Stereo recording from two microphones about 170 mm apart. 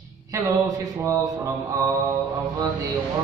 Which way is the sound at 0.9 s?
15° right (ahead or behind).